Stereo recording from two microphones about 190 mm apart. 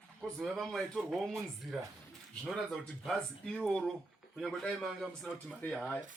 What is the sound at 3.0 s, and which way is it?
A man's voice, 5° left (ahead or behind).